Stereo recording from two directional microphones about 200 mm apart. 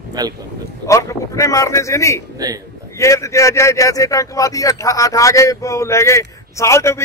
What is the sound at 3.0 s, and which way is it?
A man's voice, 15° left (ahead or behind).